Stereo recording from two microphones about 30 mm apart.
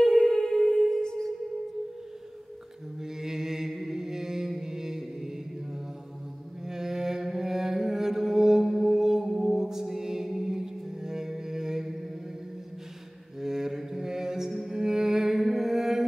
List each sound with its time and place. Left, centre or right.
0.3 s music: centre
3.0 s mantra: centre
8.6 s music: centre
8.9 s music: centre
13.4 s mantra: centre
14.7 s music: centre